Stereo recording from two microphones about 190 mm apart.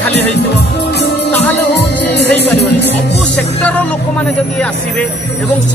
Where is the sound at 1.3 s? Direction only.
10° left (ahead or behind).